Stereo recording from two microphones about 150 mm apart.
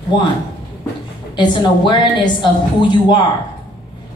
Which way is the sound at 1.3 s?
30° left (ahead or behind).